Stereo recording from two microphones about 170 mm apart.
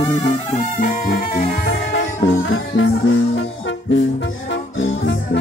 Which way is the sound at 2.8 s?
90° left.